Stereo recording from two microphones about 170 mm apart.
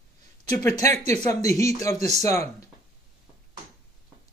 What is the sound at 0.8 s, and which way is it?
Speech, 15° left (ahead or behind).